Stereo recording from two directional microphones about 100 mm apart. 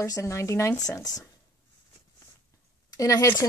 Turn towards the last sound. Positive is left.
turn(degrees=35)  # may be behind; listen again after turning